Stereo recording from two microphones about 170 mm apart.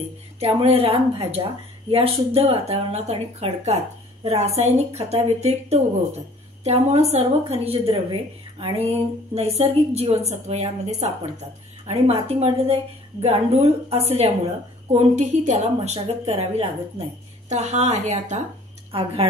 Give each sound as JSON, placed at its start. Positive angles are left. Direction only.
{"t": 0.4, "sound": "speech", "side_deg": -35}